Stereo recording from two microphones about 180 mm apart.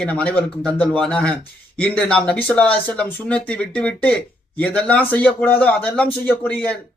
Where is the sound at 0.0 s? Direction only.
5° left (ahead or behind).